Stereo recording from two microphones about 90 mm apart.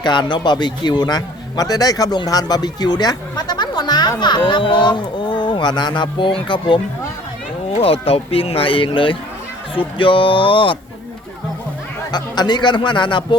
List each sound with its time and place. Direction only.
0.0 s a man's voice: 55° left (ahead or behind); by 6.8 s 75° left (ahead or behind)
7.8 s speech: 90° left; by 10.8 s 75° left (ahead or behind)
12.1 s speech: 55° left (ahead or behind)